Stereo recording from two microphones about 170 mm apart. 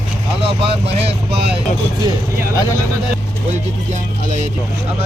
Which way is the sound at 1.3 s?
70° right (ahead or behind).